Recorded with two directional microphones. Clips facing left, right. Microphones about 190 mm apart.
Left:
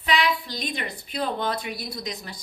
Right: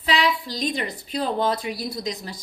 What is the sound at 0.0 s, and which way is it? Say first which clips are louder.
A woman's voice: right 1 dB; 35° right (ahead or behind).